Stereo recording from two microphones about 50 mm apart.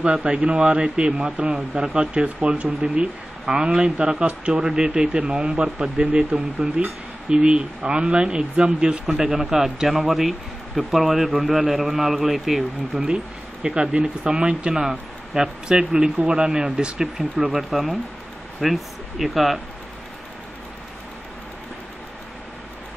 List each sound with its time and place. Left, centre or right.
0.0 s a man's voice: right; by 13.0 s centre
13.0 s speech: centre